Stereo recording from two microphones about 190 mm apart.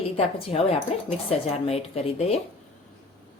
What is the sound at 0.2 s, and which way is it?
Speech, 30° left (ahead or behind).